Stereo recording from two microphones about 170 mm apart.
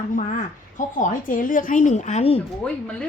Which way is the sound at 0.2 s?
50° left (ahead or behind).